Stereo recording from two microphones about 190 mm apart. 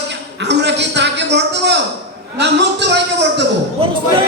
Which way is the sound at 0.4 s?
65° right (ahead or behind).